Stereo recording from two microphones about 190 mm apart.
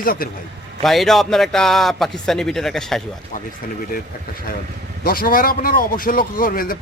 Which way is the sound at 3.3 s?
45° left (ahead or behind).